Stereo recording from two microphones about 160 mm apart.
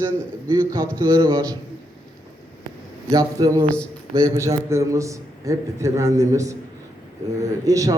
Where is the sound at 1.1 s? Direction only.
20° right (ahead or behind).